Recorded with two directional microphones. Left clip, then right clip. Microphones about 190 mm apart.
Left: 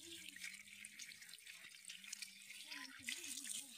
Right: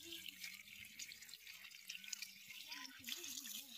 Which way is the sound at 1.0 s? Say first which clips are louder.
Right 1 dB; 50° left (ahead or behind).